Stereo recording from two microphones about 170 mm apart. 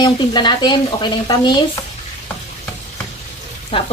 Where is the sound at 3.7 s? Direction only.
35° left (ahead or behind).